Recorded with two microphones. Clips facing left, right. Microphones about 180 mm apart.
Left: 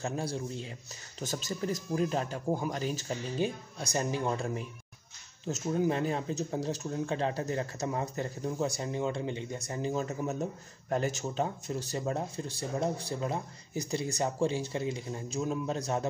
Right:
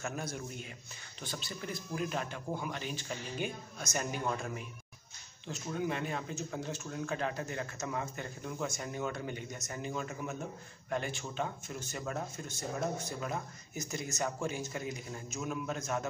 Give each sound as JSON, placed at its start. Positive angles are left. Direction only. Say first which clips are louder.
{"t": 0.0, "sound": "speech", "louder": "left 5 dB", "side_deg": 30}
{"t": 1.2, "sound": "speech", "louder": "left 8 dB", "side_deg": 40}